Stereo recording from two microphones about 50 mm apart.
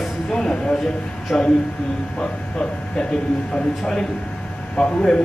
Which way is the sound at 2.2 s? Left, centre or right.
Centre.